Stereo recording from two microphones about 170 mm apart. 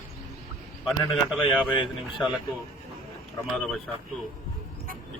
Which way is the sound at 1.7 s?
30° left (ahead or behind).